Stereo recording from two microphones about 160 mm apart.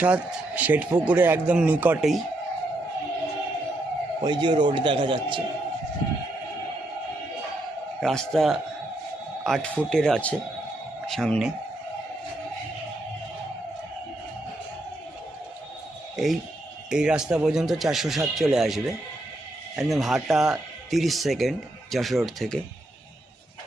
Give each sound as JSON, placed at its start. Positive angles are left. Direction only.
{"t": 0.0, "sound": "a man's voice", "side_deg": -10}
{"t": 4.2, "sound": "a man's voice", "side_deg": -30}
{"t": 8.0, "sound": "speech", "side_deg": 0}
{"t": 16.1, "sound": "a man's voice", "side_deg": 0}